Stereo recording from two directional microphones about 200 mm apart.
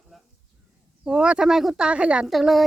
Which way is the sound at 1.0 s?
5° right (ahead or behind).